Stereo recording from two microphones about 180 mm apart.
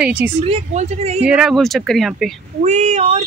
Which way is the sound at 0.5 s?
35° right (ahead or behind).